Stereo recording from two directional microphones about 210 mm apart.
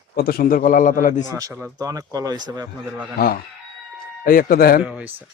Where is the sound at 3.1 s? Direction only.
45° left (ahead or behind).